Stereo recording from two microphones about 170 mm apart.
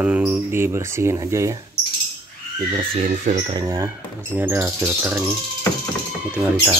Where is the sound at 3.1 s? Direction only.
45° right (ahead or behind).